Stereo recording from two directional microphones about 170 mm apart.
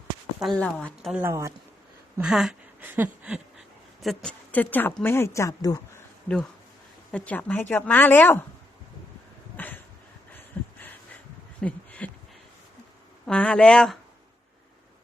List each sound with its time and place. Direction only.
0.3 s speech: 5° left (ahead or behind)
1.1 s speech: 15° right (ahead or behind)
2.2 s speech: centre (ahead or behind)
4.0 s speech: 5° left (ahead or behind); by 6.0 s 20° left (ahead or behind)
6.2 s speech: 5° left (ahead or behind)
9.6 s a sound: 10° left (ahead or behind)
13.2 s speech: 5° left (ahead or behind)